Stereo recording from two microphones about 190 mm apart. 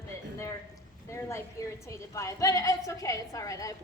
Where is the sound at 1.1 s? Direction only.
15° left (ahead or behind).